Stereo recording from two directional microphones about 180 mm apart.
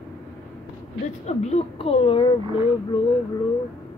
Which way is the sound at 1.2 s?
35° left (ahead or behind).